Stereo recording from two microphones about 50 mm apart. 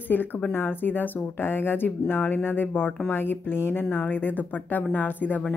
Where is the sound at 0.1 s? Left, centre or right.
Left.